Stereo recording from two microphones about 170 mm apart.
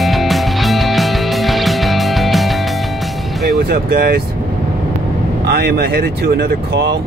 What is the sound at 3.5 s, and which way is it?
Speech, 65° right (ahead or behind).